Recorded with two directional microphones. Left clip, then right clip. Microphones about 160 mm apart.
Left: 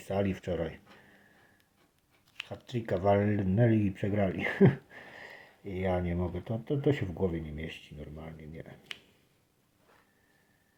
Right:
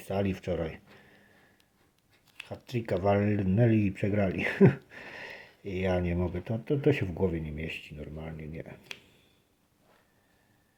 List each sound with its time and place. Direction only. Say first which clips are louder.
0.0 s speech: even; 15° right (ahead or behind)
2.5 s speech: right 2 dB; 15° right (ahead or behind)